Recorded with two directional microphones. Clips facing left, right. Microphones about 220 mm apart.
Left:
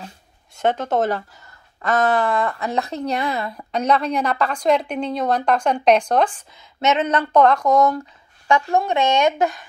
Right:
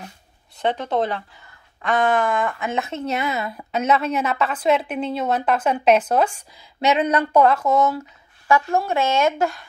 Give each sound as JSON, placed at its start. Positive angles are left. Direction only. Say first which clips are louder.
{"t": 0.6, "sound": "speech", "louder": "left 2 dB", "side_deg": 45}
{"t": 3.0, "sound": "a woman's voice", "louder": "left 1 dB", "side_deg": -5}
{"t": 8.5, "sound": "a woman's voice", "louder": "left 1 dB", "side_deg": 20}